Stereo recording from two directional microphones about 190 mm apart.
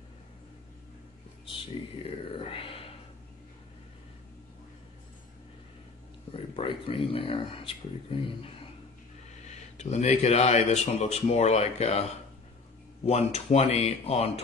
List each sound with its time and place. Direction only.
1.4 s speech: 25° left (ahead or behind)
6.3 s speech: 30° left (ahead or behind)
9.8 s speech: 35° left (ahead or behind)